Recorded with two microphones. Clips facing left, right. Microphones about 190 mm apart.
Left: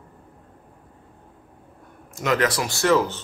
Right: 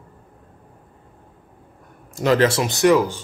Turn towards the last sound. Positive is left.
turn(degrees=-15)  # may be behind; listen again after turning